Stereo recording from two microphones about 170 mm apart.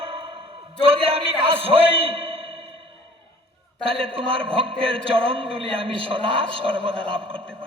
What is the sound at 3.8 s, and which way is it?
A man's voice, 35° right (ahead or behind).